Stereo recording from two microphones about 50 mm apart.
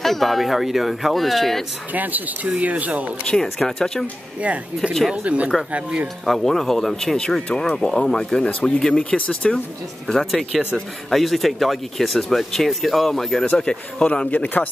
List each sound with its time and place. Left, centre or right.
0.0 s speech: centre
2.0 s speech: right
3.3 s speech: centre
4.4 s speech: right
6.2 s speech: centre
8.5 s speech: left
10.0 s speech: centre
13.6 s speech: centre
14.3 s speech: left